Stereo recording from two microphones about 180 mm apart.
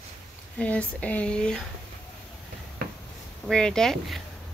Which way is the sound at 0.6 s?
5° left (ahead or behind).